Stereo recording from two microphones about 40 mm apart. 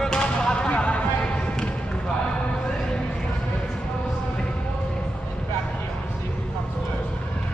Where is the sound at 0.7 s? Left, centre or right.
Left.